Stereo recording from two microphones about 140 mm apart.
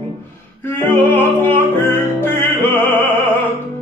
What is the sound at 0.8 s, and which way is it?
Music, 15° left (ahead or behind).